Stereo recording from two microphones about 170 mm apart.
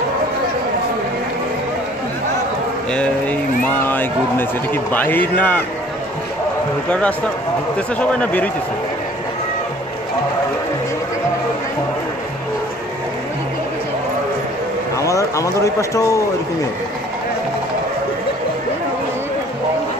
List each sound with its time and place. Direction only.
2.9 s speech: 5° left (ahead or behind)
6.9 s speech: 5° left (ahead or behind)
15.0 s speech: 20° left (ahead or behind)